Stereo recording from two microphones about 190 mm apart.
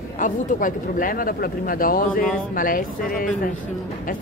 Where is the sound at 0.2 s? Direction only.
45° left (ahead or behind).